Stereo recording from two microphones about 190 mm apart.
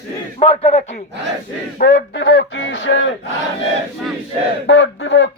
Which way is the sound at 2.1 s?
60° left (ahead or behind).